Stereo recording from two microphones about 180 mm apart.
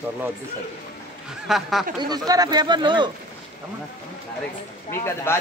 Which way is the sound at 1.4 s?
Centre (ahead or behind).